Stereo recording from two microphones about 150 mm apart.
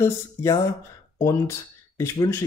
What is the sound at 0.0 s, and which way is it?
Speech, 20° left (ahead or behind).